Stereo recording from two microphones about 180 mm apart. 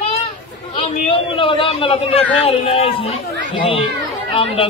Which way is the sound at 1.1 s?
30° left (ahead or behind).